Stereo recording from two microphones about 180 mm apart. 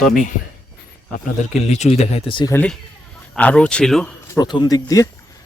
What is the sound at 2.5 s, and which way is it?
Speech, 5° left (ahead or behind).